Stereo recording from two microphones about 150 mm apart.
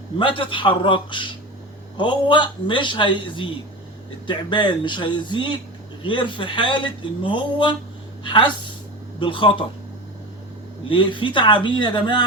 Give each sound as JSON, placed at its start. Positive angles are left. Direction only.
{"t": 0.2, "sound": "speech", "side_deg": 35}
{"t": 10.8, "sound": "speech", "side_deg": 35}